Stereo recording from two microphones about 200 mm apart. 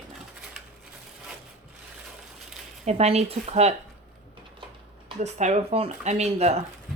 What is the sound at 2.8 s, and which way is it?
Speech, 30° right (ahead or behind).